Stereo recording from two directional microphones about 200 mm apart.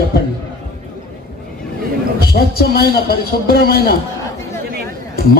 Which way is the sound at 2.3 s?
50° left (ahead or behind).